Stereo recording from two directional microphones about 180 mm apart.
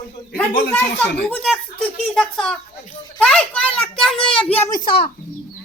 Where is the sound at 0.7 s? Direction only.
10° left (ahead or behind).